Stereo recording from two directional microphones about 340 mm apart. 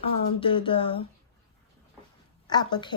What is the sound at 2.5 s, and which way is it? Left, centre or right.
Speech, centre.